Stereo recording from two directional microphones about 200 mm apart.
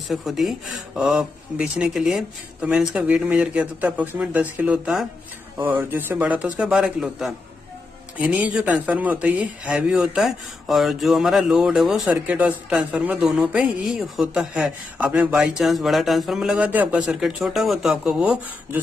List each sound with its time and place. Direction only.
0.1 s a man's voice: centre (ahead or behind)